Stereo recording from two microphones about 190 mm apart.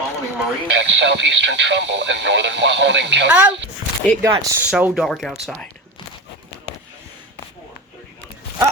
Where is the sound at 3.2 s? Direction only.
5° right (ahead or behind).